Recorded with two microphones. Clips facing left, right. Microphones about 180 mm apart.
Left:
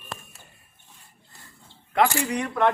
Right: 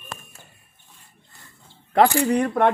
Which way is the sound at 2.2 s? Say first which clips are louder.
Right 7 dB; 55° right (ahead or behind).